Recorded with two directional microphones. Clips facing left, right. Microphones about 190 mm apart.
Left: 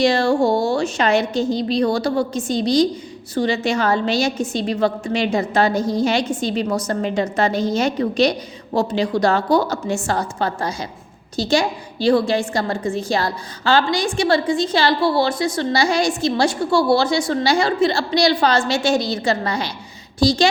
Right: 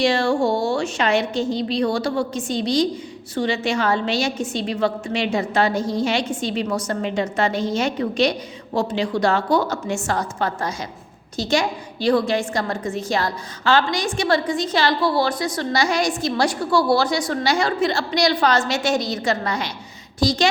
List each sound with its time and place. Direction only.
0.0 s a woman's voice: 40° left (ahead or behind)